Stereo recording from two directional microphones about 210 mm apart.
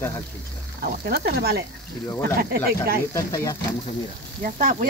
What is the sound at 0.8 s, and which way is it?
Speech, 45° right (ahead or behind).